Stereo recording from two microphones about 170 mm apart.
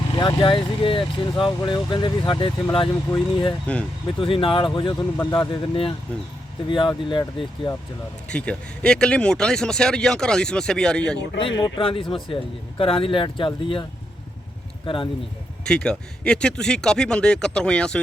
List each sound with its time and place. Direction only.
0.2 s speech: 30° left (ahead or behind)
5.1 s speech: 10° left (ahead or behind)
5.4 s speech: 30° left (ahead or behind)
8.3 s speech: 5° left (ahead or behind)
11.3 s speech: 30° left (ahead or behind)
14.8 s speech: 30° left (ahead or behind)
15.6 s speech: 5° left (ahead or behind)